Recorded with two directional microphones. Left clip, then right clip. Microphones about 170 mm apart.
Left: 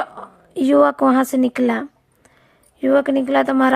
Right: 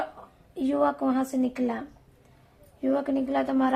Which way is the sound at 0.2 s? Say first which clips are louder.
Left 10 dB; 50° left (ahead or behind).